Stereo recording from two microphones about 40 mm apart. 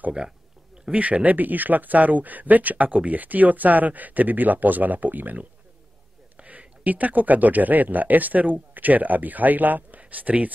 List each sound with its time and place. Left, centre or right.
0.9 s speech: right
6.3 s speech: right